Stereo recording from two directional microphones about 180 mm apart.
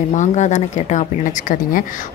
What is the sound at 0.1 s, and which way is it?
Speech, 40° left (ahead or behind).